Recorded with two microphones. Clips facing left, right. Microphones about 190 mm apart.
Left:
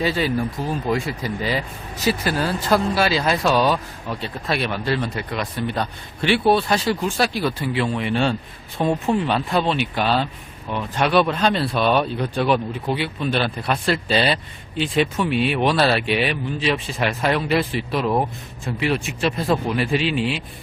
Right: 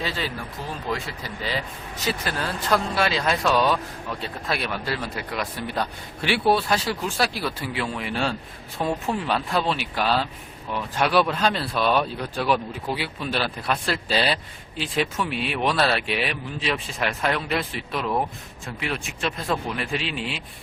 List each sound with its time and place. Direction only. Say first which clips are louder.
0.0 s speech: left 9 dB; 10° left (ahead or behind)
8.8 s speech: left 5 dB; 25° left (ahead or behind)
9.2 s speech: left 3 dB; centre (ahead or behind)